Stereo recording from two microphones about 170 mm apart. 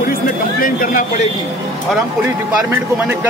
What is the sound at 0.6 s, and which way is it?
Speech, 50° left (ahead or behind).